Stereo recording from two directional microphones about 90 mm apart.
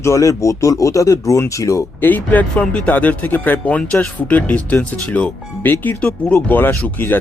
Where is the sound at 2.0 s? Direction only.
20° left (ahead or behind).